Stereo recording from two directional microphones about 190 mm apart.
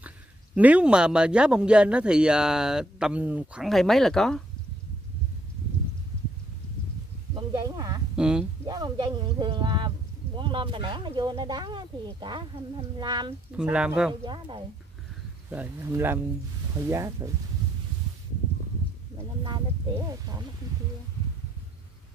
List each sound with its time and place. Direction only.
0.6 s speech: 5° right (ahead or behind)
7.3 s a sound: 20° right (ahead or behind)
8.2 s speech: 5° right (ahead or behind)
8.6 s speech: 20° right (ahead or behind)
13.5 s speech: 5° right (ahead or behind)
14.2 s speech: 25° right (ahead or behind)
15.5 s speech: 10° right (ahead or behind)